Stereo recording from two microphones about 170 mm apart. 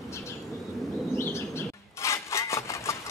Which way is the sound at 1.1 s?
15° left (ahead or behind).